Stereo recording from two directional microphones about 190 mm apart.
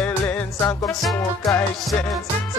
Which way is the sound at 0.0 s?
5° left (ahead or behind).